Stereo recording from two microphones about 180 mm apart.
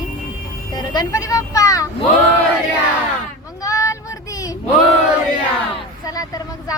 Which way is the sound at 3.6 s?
20° left (ahead or behind).